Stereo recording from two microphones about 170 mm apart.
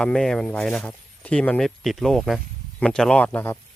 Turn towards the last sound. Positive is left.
turn(degrees=10)  # may be behind; listen again after turning